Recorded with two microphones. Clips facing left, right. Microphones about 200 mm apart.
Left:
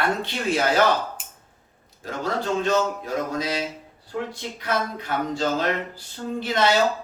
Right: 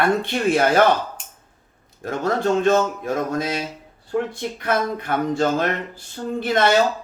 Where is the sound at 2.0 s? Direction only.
50° right (ahead or behind).